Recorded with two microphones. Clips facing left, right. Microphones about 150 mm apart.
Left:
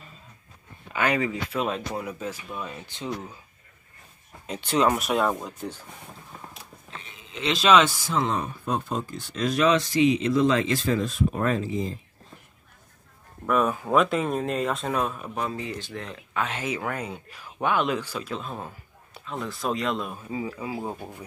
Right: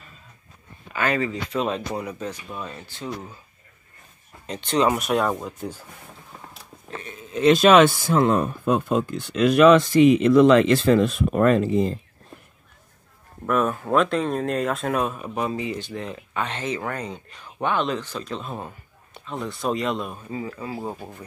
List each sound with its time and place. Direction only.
0.9 s speech: 15° left (ahead or behind)
2.7 s speech: 20° left (ahead or behind)
4.5 s speech: 5° left (ahead or behind)
5.3 s speech: 10° right (ahead or behind)
6.9 s speech: 45° right (ahead or behind); by 12.0 s 65° right (ahead or behind)
13.5 s speech: centre (ahead or behind)
20.8 s speech: 10° right (ahead or behind)